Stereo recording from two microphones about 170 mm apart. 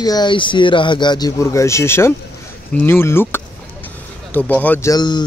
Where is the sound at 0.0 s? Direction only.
25° left (ahead or behind).